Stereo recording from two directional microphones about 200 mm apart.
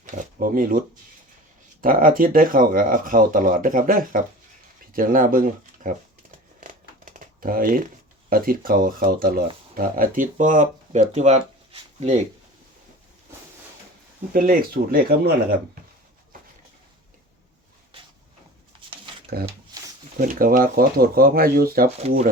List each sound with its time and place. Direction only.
0.0 s speech: 45° right (ahead or behind)
6.6 s crumpling: 40° right (ahead or behind)
8.3 s speech: 45° right (ahead or behind)
14.3 s speech: 45° right (ahead or behind)
19.3 s speech: 50° right (ahead or behind)
22.0 s speech: 30° right (ahead or behind)